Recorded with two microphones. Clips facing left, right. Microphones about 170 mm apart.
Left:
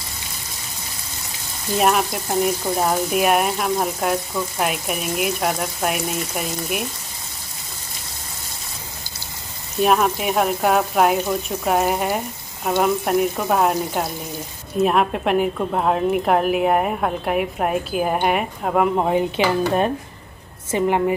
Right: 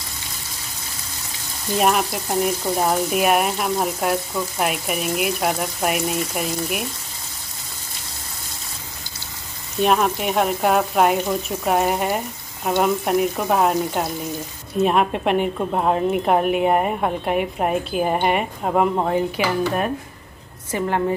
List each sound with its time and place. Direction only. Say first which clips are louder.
1.7 s speech: left 1 dB; centre (ahead or behind)
9.8 s speech: left 1 dB; centre (ahead or behind)
15.5 s speech: even; 10° right (ahead or behind)
19.0 s a woman's voice: left 2 dB; 20° left (ahead or behind)